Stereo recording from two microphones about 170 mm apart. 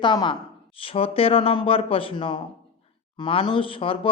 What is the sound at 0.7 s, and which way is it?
Speech, 35° left (ahead or behind).